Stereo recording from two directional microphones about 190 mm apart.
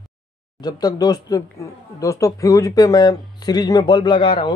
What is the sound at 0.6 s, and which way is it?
Speech, 20° left (ahead or behind).